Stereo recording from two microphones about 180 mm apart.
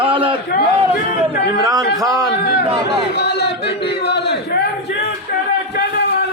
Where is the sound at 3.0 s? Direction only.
65° left (ahead or behind).